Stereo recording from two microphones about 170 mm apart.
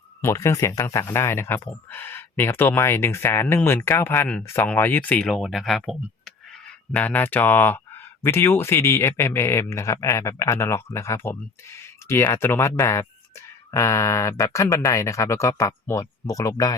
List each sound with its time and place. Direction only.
0.2 s speech: 15° left (ahead or behind); by 6.3 s centre (ahead or behind)
6.9 s speech: 10° left (ahead or behind)